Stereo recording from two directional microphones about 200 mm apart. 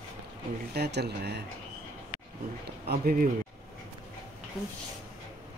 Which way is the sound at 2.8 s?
50° right (ahead or behind).